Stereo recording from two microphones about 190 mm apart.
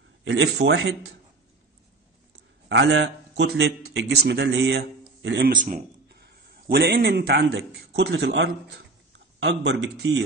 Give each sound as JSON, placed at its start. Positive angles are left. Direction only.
{"t": 0.2, "sound": "a man's voice", "side_deg": -75}
{"t": 2.7, "sound": "a man's voice", "side_deg": -80}
{"t": 5.6, "sound": "a man's voice", "side_deg": -50}